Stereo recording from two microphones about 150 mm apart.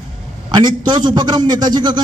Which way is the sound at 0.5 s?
30° right (ahead or behind).